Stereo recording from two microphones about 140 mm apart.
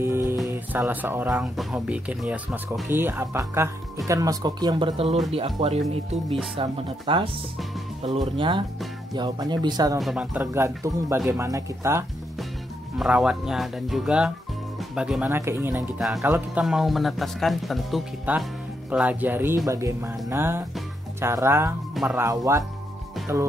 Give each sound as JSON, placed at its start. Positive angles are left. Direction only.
{"t": 0.0, "sound": "music", "side_deg": -15}
{"t": 0.5, "sound": "speech", "side_deg": -15}
{"t": 1.4, "sound": "speech", "side_deg": -5}
{"t": 9.9, "sound": "speech", "side_deg": -5}
{"t": 12.9, "sound": "speech", "side_deg": -5}
{"t": 16.5, "sound": "speech", "side_deg": -5}
{"t": 18.3, "sound": "speech", "side_deg": -10}